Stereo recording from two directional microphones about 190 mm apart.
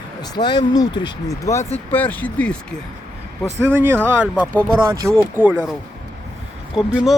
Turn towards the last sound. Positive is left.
turn(degrees=0)  # may be behind; listen again after turning